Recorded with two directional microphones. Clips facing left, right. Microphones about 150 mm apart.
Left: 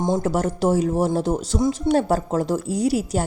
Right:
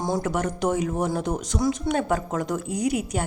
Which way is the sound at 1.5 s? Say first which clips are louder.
Left 3 dB; 15° left (ahead or behind).